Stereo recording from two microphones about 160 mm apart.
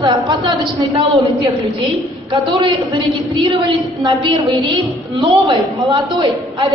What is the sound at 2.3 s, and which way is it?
A woman's voice, 30° right (ahead or behind).